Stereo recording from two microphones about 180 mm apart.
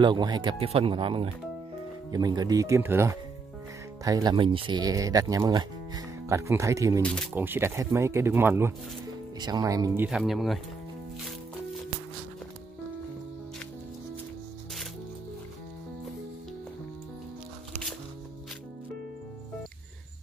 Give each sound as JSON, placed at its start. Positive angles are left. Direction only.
{"t": 0.0, "sound": "speech", "side_deg": -25}
{"t": 7.0, "sound": "speech", "side_deg": 5}
{"t": 7.3, "sound": "speech", "side_deg": -10}
{"t": 10.0, "sound": "speech", "side_deg": 0}